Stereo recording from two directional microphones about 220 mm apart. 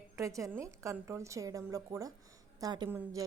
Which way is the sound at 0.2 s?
15° right (ahead or behind).